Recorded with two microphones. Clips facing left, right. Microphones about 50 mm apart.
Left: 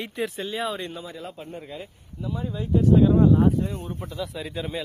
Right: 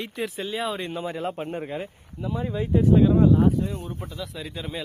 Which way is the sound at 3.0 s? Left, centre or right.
Centre.